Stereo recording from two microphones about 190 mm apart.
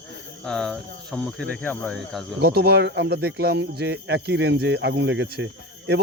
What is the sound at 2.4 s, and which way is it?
Speech, 55° right (ahead or behind).